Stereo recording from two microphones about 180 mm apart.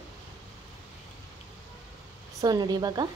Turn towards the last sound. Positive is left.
turn(degrees=-20)  # may be behind; listen again after turning